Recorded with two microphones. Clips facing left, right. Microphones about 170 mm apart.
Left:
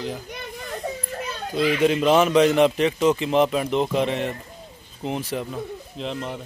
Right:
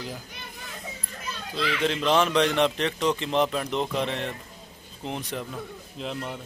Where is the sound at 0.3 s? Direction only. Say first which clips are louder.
Left 9 dB; 50° left (ahead or behind).